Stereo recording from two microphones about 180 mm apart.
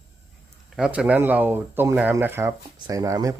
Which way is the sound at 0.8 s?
5° right (ahead or behind).